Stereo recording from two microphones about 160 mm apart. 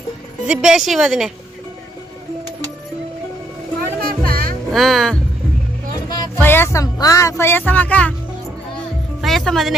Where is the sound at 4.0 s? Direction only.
65° right (ahead or behind).